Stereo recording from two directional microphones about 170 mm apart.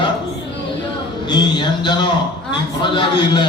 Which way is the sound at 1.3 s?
25° left (ahead or behind).